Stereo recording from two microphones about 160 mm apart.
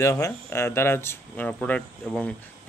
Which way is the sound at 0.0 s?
20° left (ahead or behind).